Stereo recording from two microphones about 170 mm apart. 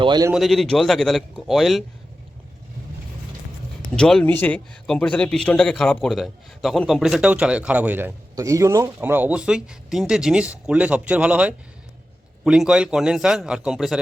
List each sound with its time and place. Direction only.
0.0 s a man's voice: 25° right (ahead or behind)
0.3 s a man's voice: centre (ahead or behind)
3.9 s a man's voice: 5° left (ahead or behind)